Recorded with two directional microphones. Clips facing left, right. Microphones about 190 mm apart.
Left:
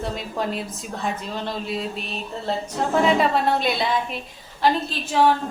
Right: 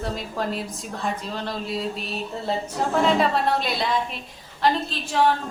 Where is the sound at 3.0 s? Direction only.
Centre (ahead or behind).